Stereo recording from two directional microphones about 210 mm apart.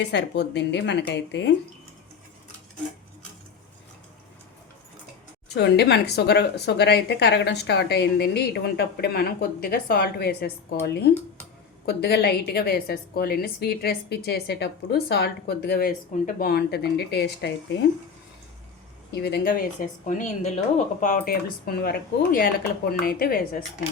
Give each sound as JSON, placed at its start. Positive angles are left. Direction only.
{"t": 0.0, "sound": "speech", "side_deg": 55}
{"t": 5.5, "sound": "a woman's voice", "side_deg": 50}
{"t": 11.9, "sound": "a woman's voice", "side_deg": 50}
{"t": 19.1, "sound": "a woman's voice", "side_deg": 50}